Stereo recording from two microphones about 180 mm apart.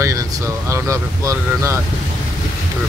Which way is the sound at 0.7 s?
15° right (ahead or behind).